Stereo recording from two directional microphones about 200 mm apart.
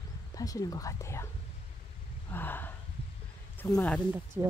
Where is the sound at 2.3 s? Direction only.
10° left (ahead or behind).